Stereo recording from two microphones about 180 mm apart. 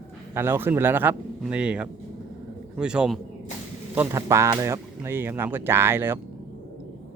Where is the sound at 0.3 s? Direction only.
15° right (ahead or behind).